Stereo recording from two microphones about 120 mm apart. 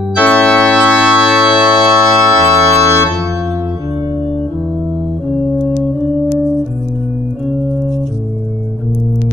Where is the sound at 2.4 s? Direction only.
20° right (ahead or behind).